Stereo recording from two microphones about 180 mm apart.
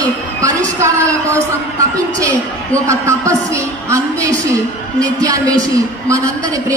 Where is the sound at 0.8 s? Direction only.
15° right (ahead or behind).